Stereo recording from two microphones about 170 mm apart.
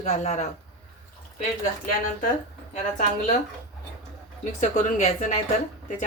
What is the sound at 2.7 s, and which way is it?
Speech, 45° left (ahead or behind).